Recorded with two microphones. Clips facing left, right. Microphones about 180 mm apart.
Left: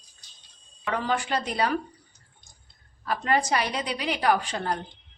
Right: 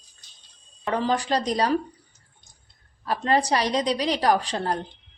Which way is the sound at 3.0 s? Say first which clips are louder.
Right 3 dB; 30° right (ahead or behind).